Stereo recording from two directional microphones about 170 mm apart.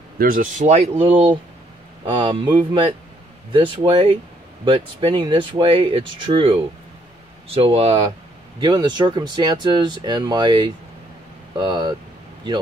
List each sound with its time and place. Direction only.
0.2 s speech: 55° right (ahead or behind); by 8.0 s 35° right (ahead or behind)
8.5 s speech: 25° right (ahead or behind)